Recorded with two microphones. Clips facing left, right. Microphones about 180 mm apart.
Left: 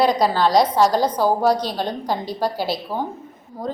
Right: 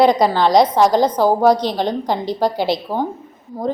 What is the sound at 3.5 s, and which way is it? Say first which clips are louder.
Speech: right 6 dB; 10° right (ahead or behind).